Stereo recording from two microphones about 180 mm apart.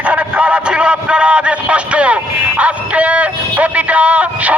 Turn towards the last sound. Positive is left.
turn(degrees=-5)  # may be behind; listen again after turning